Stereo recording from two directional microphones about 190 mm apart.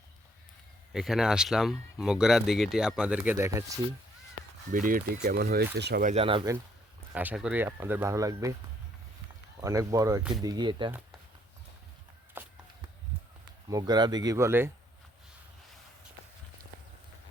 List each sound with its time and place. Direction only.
0.9 s speech: centre (ahead or behind)
4.7 s speech: 45° right (ahead or behind)
6.1 s speech: 30° right (ahead or behind)
7.1 s speech: 10° right (ahead or behind)
9.6 s speech: 15° right (ahead or behind)
12.4 s walk: 10° right (ahead or behind)
13.7 s speech: 20° right (ahead or behind)